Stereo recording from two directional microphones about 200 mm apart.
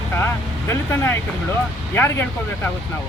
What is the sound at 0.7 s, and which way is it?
Speech, 15° left (ahead or behind).